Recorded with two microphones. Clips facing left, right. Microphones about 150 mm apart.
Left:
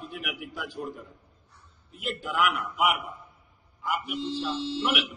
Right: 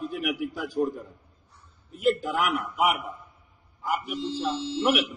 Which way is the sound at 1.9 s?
40° right (ahead or behind).